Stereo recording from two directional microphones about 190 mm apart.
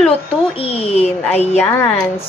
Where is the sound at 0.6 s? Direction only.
30° left (ahead or behind).